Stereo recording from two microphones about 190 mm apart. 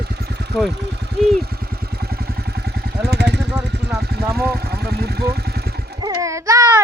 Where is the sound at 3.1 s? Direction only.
60° right (ahead or behind).